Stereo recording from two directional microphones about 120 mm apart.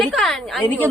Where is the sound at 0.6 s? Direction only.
15° left (ahead or behind).